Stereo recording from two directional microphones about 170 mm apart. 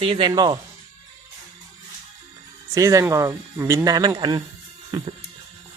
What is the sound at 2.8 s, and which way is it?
Speech, 20° right (ahead or behind).